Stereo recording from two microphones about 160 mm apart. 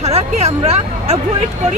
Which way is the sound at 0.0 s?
40° right (ahead or behind).